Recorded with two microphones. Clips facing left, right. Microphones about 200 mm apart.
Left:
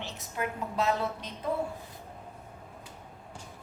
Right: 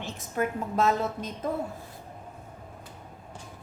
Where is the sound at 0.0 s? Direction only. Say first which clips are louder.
Right 5 dB; 45° right (ahead or behind).